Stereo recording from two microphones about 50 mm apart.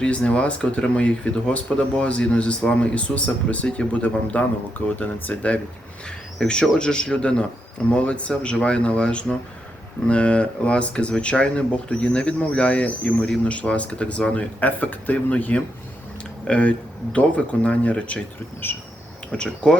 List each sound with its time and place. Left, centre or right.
0.0 s speech: left
6.1 s speech: centre
19.3 s speech: left